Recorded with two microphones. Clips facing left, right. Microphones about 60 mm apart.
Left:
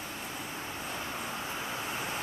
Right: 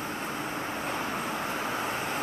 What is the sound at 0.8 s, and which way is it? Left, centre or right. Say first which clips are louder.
Vehicle: right 5 dB; right.